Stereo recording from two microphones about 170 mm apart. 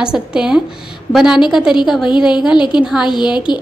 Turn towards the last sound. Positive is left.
turn(degrees=25)  # may be behind; listen again after turning